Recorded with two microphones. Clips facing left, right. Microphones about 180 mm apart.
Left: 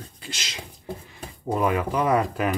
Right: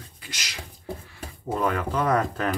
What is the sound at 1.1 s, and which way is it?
Speech, 15° left (ahead or behind).